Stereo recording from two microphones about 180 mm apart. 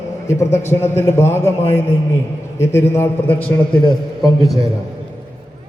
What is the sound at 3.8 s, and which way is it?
Speech, 25° left (ahead or behind).